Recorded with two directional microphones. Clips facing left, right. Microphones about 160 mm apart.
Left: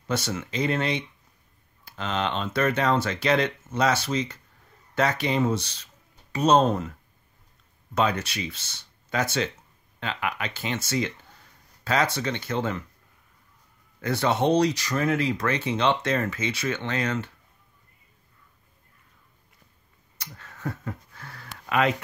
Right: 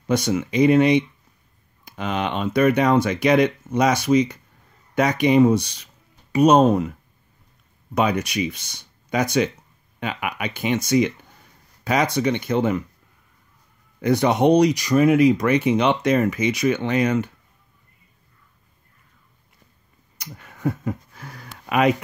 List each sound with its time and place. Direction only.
0.1 s speech: 15° right (ahead or behind)
7.9 s speech: 15° right (ahead or behind)
14.0 s speech: 15° right (ahead or behind)
20.2 s a sound: 15° right (ahead or behind)